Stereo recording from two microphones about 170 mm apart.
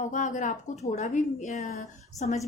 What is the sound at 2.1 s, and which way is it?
Speech, 20° left (ahead or behind).